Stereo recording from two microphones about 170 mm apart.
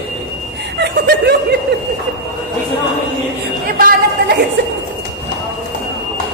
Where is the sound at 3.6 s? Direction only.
55° right (ahead or behind).